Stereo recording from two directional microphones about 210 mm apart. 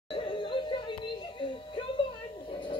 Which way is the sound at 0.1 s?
25° left (ahead or behind).